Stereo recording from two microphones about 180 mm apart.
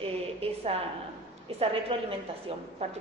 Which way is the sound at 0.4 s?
35° right (ahead or behind).